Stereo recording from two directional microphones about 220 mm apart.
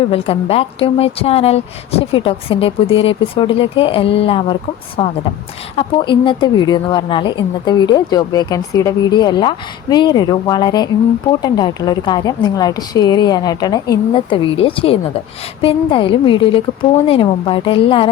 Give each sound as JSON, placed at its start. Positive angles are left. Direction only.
{"t": 0.1, "sound": "speech", "side_deg": 25}